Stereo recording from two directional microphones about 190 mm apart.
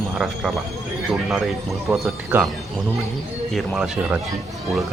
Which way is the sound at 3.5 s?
5° right (ahead or behind).